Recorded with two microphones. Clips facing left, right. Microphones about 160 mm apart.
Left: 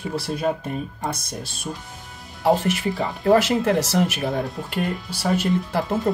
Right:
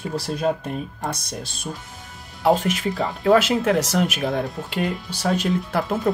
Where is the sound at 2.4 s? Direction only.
15° right (ahead or behind).